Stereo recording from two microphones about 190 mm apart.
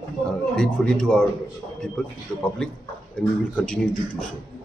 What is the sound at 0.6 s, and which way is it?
Speech, 5° left (ahead or behind).